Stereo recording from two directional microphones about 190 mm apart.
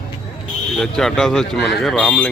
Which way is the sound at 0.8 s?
Centre (ahead or behind).